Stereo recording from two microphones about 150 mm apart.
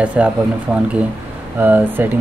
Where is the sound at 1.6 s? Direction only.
10° right (ahead or behind).